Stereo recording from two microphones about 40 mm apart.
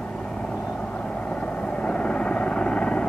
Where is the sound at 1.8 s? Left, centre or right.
Left.